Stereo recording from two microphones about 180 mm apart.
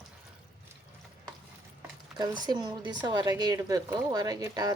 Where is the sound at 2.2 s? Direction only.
25° right (ahead or behind).